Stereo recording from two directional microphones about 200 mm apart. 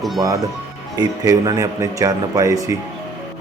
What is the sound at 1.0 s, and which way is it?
Speech, 20° right (ahead or behind).